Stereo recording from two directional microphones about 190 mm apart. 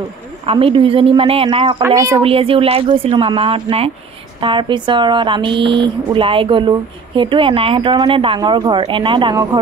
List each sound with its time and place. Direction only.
0.5 s speech: 30° right (ahead or behind)
1.8 s speech: 15° right (ahead or behind)
2.2 s speech: 30° right (ahead or behind)